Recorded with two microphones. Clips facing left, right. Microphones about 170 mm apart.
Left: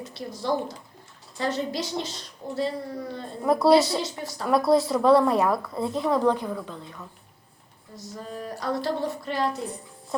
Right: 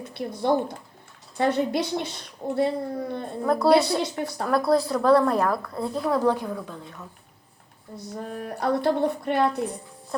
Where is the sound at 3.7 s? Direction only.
60° right (ahead or behind).